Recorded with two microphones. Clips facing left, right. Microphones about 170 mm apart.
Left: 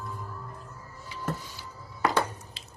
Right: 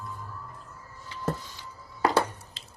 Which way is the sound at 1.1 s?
10° left (ahead or behind).